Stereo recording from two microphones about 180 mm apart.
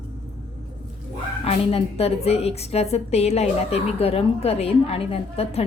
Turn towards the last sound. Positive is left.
turn(degrees=35)  # may be behind; listen again after turning